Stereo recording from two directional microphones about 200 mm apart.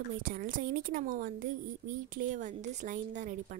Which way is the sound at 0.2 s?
45° right (ahead or behind).